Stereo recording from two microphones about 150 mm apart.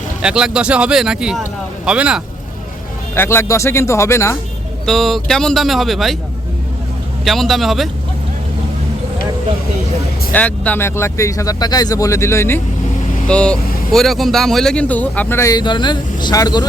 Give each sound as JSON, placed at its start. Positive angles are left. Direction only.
{"t": 0.2, "sound": "speech", "side_deg": -5}
{"t": 3.2, "sound": "speech", "side_deg": 15}
{"t": 4.9, "sound": "speech", "side_deg": 0}
{"t": 7.3, "sound": "speech", "side_deg": 0}
{"t": 10.3, "sound": "speech", "side_deg": 10}
{"t": 13.2, "sound": "speech", "side_deg": 5}